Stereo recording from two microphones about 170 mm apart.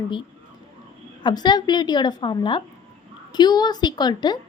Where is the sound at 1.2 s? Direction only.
25° left (ahead or behind).